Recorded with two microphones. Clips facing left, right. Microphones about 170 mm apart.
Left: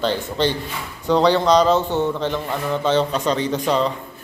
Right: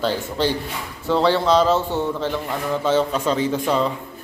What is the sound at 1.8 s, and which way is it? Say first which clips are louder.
Speech: left 2 dB; 20° left (ahead or behind).